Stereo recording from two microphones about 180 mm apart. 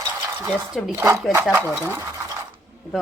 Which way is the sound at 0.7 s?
Centre (ahead or behind).